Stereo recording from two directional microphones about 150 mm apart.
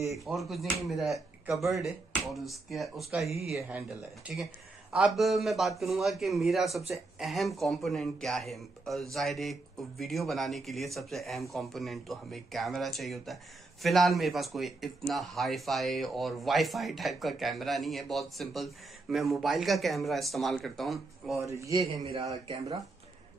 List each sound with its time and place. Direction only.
0.2 s a man's voice: centre (ahead or behind)
4.9 s a man's voice: centre (ahead or behind)
21.5 s a man's voice: 20° right (ahead or behind)
22.0 s a man's voice: 40° right (ahead or behind)